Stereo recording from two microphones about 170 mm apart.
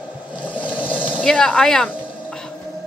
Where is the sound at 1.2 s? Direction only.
5° left (ahead or behind).